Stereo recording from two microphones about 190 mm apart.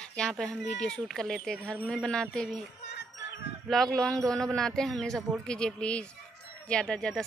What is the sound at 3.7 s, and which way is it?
Speech, centre (ahead or behind).